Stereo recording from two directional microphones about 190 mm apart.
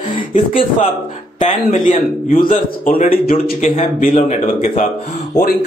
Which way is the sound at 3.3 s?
40° left (ahead or behind).